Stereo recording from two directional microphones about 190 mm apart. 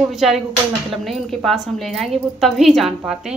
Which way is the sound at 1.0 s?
Centre (ahead or behind).